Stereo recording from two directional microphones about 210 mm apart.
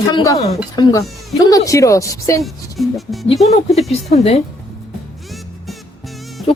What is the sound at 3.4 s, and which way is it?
Speech, 30° left (ahead or behind).